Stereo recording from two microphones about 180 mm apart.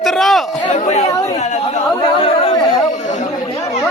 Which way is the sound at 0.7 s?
40° left (ahead or behind).